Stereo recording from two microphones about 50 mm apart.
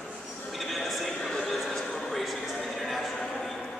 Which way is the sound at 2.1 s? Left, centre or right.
Centre.